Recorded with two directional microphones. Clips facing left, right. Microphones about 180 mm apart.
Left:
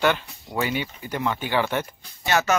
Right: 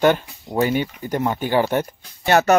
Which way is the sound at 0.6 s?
45° right (ahead or behind).